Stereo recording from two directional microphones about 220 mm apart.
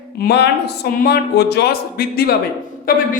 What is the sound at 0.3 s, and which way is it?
A man's voice, 50° left (ahead or behind).